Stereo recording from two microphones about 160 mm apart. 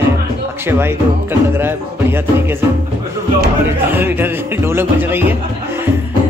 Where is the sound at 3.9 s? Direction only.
15° right (ahead or behind).